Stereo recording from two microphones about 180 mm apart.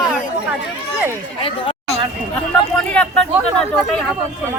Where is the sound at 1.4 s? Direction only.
30° left (ahead or behind).